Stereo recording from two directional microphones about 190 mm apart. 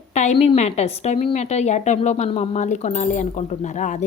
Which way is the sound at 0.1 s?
35° left (ahead or behind).